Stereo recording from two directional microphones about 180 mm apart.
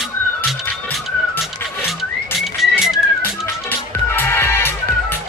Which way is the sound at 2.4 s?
Centre (ahead or behind).